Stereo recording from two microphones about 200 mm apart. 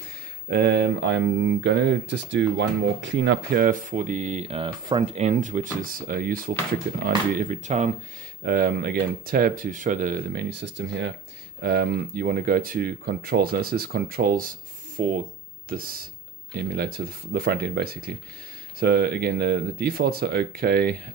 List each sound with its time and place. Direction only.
0.5 s speech: 55° right (ahead or behind); by 7.9 s 35° right (ahead or behind)
8.5 s speech: 50° right (ahead or behind)
11.6 s speech: 50° right (ahead or behind)